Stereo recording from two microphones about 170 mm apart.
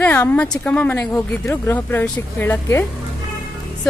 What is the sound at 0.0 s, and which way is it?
Speech, 10° left (ahead or behind).